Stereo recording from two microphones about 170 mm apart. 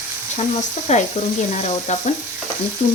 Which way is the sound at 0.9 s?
40° left (ahead or behind).